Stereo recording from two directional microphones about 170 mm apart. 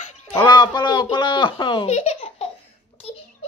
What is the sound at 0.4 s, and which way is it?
Speech, 25° left (ahead or behind).